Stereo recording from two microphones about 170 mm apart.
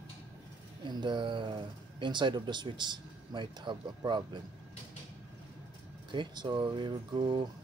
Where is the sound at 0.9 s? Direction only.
25° right (ahead or behind).